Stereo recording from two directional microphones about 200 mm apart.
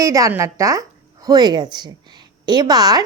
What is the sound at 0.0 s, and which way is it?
A woman's voice, 15° right (ahead or behind).